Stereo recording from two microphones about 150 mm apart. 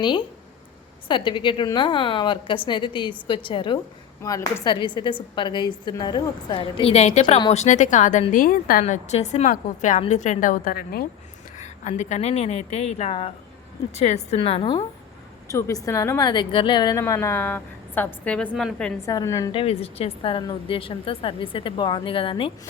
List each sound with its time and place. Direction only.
0.0 s a woman's voice: 30° left (ahead or behind)
4.2 s a woman's voice: 20° left (ahead or behind)
4.6 s a woman's voice: 30° left (ahead or behind); by 8.2 s 55° left (ahead or behind)
8.3 s a woman's voice: 65° left (ahead or behind)
8.8 s a woman's voice: 50° left (ahead or behind); by 11.0 s 75° left (ahead or behind)
11.6 s speech: 50° left (ahead or behind)
15.4 s a woman's voice: 20° left (ahead or behind)
17.0 s a woman's voice: 20° left (ahead or behind)
19.0 s a woman's voice: 20° left (ahead or behind)
19.5 s a woman's voice: 40° left (ahead or behind)